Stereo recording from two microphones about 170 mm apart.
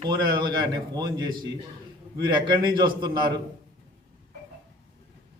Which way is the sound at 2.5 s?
25° right (ahead or behind).